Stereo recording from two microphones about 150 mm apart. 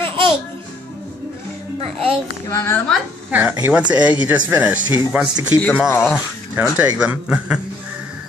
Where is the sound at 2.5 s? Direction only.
20° left (ahead or behind).